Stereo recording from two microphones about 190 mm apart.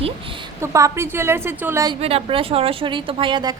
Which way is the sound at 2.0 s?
30° right (ahead or behind).